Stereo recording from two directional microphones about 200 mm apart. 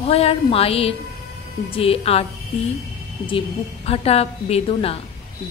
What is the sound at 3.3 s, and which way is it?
A woman's voice, 30° left (ahead or behind).